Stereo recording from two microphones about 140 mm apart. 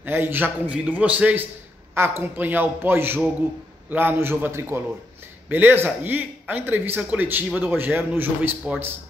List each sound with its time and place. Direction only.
0.0 s speech: 15° right (ahead or behind)